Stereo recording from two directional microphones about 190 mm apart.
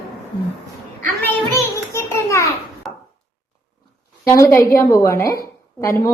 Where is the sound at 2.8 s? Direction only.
Centre (ahead or behind).